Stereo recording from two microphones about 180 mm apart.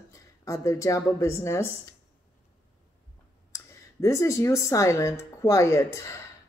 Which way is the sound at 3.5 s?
15° left (ahead or behind).